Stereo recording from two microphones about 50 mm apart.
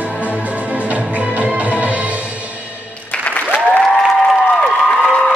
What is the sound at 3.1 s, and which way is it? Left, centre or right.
Applause, left.